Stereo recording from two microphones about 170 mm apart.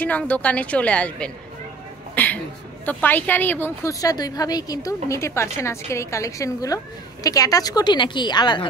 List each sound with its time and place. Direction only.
0.0 s a woman's voice: 10° left (ahead or behind); by 8.6 s 25° left (ahead or behind)